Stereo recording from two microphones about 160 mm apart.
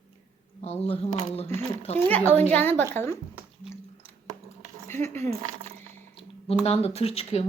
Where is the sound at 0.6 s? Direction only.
40° left (ahead or behind).